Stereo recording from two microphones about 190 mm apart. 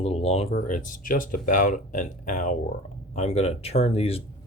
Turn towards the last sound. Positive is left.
turn(degrees=30)  # may be behind; listen again after turning